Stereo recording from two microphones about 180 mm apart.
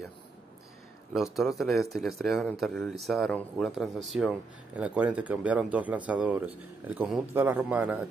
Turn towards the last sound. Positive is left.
turn(degrees=-10)  # may be behind; listen again after turning